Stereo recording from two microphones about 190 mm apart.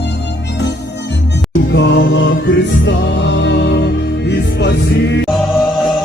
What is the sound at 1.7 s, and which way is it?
Music, 65° left (ahead or behind).